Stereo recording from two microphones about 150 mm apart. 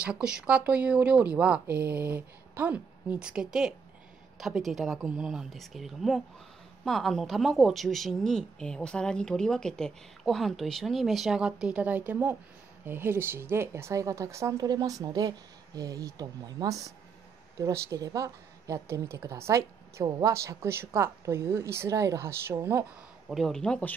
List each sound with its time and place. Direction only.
0.0 s a woman's voice: 5° right (ahead or behind)
23.2 s a woman's voice: centre (ahead or behind)